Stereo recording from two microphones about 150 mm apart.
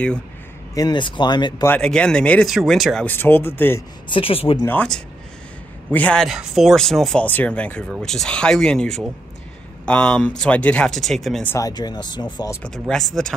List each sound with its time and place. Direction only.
0.7 s speech: 30° left (ahead or behind)
1.7 s speech: 5° left (ahead or behind)
3.1 s speech: 15° left (ahead or behind)
4.1 s speech: 40° left (ahead or behind)
4.6 s speech: 5° left (ahead or behind)
6.2 s speech: centre (ahead or behind)
11.4 s speech: 20° left (ahead or behind)
12.6 s speech: 5° left (ahead or behind)